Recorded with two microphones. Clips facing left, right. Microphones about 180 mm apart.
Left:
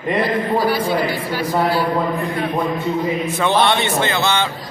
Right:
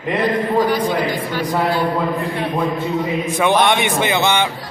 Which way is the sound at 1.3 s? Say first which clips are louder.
Even; 5° left (ahead or behind).